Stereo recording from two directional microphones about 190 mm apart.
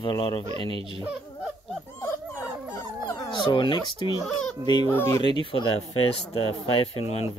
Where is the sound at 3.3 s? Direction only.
25° left (ahead or behind).